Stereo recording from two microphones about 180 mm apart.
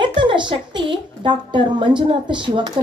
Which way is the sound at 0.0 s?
25° right (ahead or behind).